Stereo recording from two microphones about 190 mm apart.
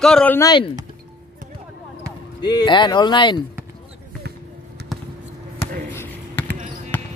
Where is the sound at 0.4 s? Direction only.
20° left (ahead or behind).